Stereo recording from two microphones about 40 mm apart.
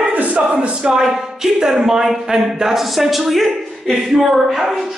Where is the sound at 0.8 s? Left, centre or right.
Centre.